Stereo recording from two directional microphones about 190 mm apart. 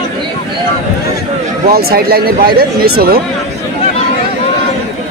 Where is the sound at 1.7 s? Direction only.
55° right (ahead or behind).